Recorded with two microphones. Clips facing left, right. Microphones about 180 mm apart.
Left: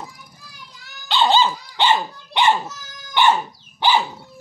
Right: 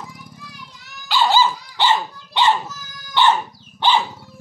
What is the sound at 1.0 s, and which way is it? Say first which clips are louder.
Dog: even; 20° left (ahead or behind).